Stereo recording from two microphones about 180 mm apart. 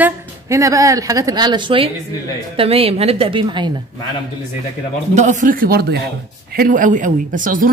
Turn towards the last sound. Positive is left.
turn(degrees=-50)  # may be behind; listen again after turning